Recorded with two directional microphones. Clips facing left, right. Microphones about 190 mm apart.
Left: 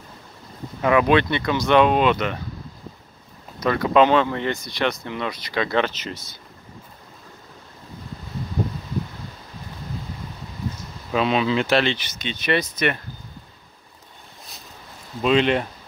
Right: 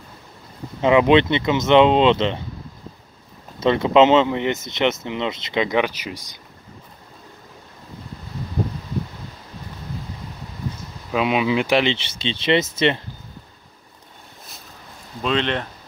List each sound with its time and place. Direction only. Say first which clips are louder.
0.7 s speech: right 3 dB; 20° right (ahead or behind)
3.5 s speech: right 3 dB; 25° right (ahead or behind)
11.1 s speech: right 1 dB; 10° right (ahead or behind)
12.0 s speech: right 4 dB; 30° right (ahead or behind)
15.2 s speech: left 4 dB; 10° left (ahead or behind)